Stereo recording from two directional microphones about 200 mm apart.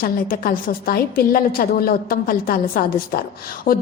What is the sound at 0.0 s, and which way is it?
A woman's voice, 45° left (ahead or behind).